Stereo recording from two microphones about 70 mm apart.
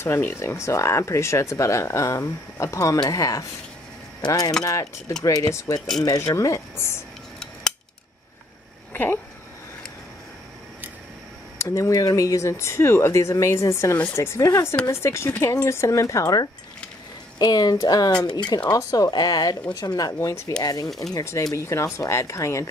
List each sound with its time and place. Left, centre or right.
0.0 s speech: left
4.6 s speech: left
5.8 s speech: centre
6.0 s speech: left
8.9 s speech: left
11.5 s speech: left
11.9 s speech: left
15.4 s speech: left
17.4 s speech: left
18.3 s speech: left
18.7 s speech: left
20.2 s speech: left
20.6 s speech: left
21.2 s speech: left